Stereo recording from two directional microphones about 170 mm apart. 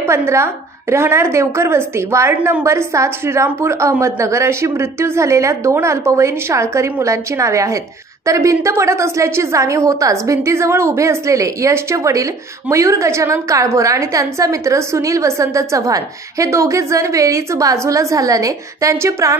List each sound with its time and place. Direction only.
0.0 s a woman's voice: 15° right (ahead or behind)